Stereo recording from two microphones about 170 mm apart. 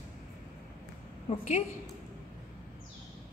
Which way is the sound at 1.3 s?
35° left (ahead or behind).